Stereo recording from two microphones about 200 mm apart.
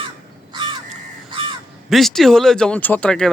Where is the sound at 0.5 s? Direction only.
20° right (ahead or behind).